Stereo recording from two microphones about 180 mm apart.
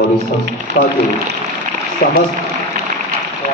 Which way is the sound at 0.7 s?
75° right (ahead or behind).